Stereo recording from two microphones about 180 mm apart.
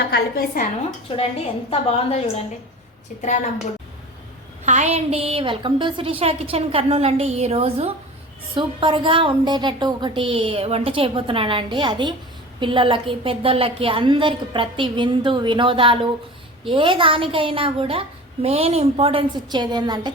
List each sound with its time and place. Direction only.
0.0 s a woman's voice: 60° left (ahead or behind)
1.1 s a woman's voice: 30° left (ahead or behind)
4.6 s a woman's voice: 40° right (ahead or behind); by 20.1 s 25° right (ahead or behind)